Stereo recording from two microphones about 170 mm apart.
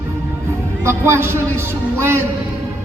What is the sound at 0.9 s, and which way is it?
Speech, 15° right (ahead or behind).